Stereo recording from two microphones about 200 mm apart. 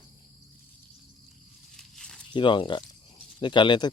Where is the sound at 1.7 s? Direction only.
5° left (ahead or behind).